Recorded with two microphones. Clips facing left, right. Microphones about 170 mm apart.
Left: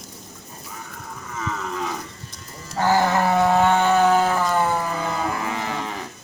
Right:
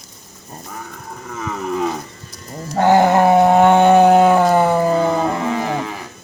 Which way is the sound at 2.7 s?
60° right (ahead or behind).